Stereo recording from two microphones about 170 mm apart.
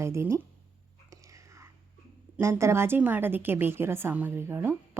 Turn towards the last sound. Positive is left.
turn(degrees=-15)  # may be behind; listen again after turning